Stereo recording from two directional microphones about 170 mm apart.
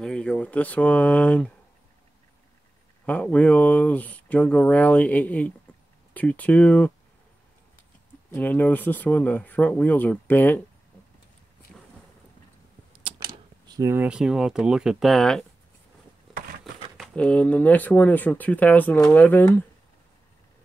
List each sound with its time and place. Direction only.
0.0 s speech: 5° left (ahead or behind)
3.1 s speech: 10° left (ahead or behind)
8.3 s speech: 10° left (ahead or behind)
12.9 s speech: 25° right (ahead or behind); by 15.4 s centre (ahead or behind)
16.3 s a sound: 55° right (ahead or behind)
16.9 s speech: 5° left (ahead or behind)